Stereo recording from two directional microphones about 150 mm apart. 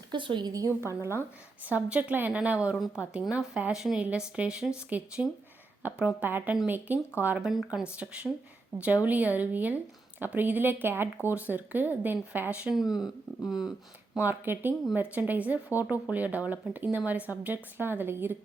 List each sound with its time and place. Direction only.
0.1 s a woman's voice: 30° right (ahead or behind); by 12.8 s 10° right (ahead or behind)
14.2 s speech: 15° right (ahead or behind)